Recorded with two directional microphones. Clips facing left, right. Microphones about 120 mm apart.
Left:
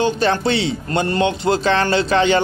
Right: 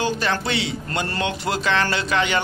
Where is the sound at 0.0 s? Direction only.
25° left (ahead or behind).